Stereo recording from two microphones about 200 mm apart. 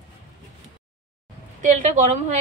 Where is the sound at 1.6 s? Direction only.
40° right (ahead or behind).